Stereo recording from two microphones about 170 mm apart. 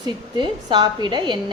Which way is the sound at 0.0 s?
25° right (ahead or behind).